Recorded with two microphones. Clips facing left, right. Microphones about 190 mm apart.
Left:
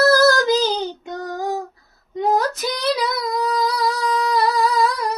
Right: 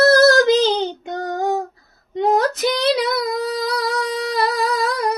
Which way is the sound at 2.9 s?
55° right (ahead or behind).